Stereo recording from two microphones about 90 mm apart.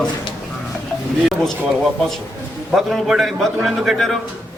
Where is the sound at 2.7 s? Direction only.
5° right (ahead or behind).